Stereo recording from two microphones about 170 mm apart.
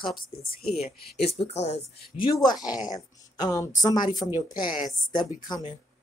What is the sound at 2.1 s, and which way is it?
Speech, 25° left (ahead or behind).